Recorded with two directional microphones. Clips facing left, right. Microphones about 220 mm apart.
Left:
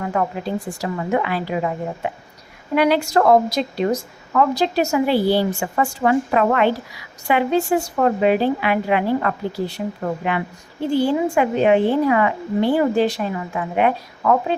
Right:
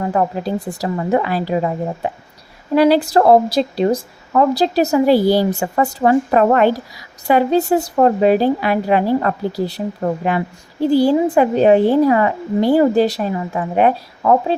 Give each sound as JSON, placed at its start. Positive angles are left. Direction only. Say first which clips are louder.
{"t": 0.0, "sound": "a woman's voice", "louder": "right 4 dB", "side_deg": -30}